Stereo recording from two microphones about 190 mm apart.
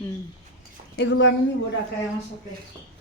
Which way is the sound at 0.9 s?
70° left (ahead or behind).